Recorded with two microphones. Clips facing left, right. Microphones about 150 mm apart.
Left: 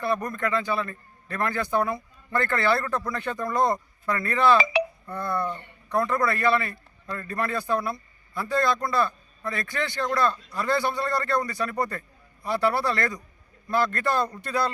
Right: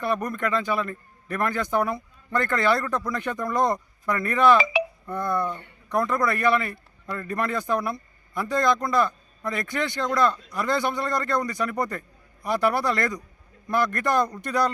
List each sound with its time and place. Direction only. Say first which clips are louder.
0.3 s a man's voice: right 1 dB; 15° right (ahead or behind)